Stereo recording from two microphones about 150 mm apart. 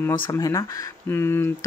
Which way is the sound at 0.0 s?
20° left (ahead or behind).